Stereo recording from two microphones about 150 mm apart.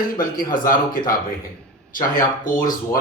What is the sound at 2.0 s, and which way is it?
Speech, 65° left (ahead or behind).